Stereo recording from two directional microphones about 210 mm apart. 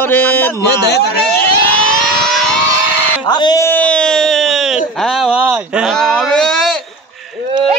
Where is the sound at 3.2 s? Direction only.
20° left (ahead or behind); by 6.7 s centre (ahead or behind).